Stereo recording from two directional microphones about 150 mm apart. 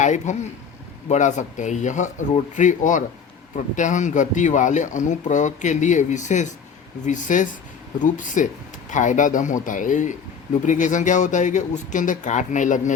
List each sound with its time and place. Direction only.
0.0 s speech: 55° left (ahead or behind)